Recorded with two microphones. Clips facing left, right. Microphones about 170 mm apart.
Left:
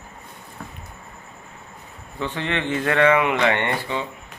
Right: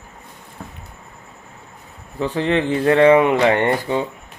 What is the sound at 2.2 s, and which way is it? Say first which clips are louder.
Speech: right 7 dB; 35° right (ahead or behind).